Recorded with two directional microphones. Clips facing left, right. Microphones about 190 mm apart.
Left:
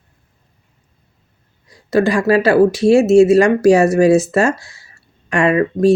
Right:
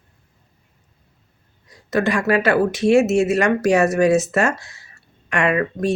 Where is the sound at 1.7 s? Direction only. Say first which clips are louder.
Left 5 dB; 30° left (ahead or behind).